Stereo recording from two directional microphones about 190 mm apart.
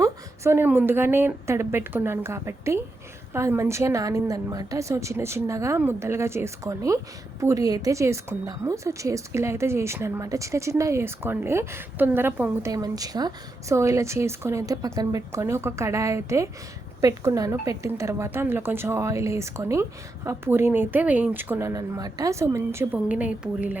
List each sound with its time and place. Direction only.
0.0 s a woman's voice: 15° right (ahead or behind)